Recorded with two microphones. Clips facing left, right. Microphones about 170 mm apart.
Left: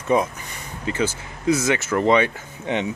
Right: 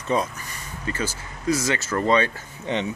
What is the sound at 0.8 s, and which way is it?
Speech, 20° left (ahead or behind).